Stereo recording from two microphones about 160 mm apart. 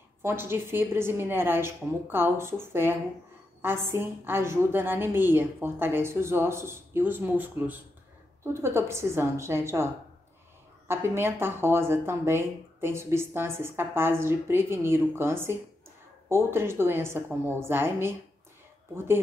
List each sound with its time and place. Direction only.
0.2 s speech: 15° right (ahead or behind)
10.9 s speech: 15° right (ahead or behind)